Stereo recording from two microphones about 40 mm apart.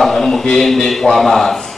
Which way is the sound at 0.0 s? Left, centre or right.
Centre.